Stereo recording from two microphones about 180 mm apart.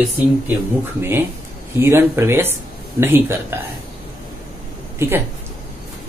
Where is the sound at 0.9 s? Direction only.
10° right (ahead or behind).